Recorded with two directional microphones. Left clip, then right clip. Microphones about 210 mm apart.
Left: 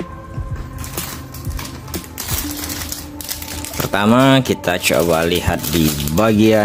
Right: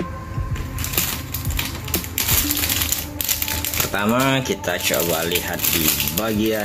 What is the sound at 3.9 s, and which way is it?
Speech, 45° left (ahead or behind).